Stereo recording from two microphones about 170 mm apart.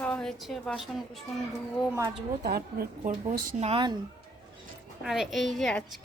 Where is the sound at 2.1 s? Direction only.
65° right (ahead or behind).